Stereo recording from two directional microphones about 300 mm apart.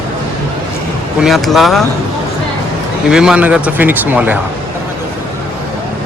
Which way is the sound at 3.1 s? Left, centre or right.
Centre.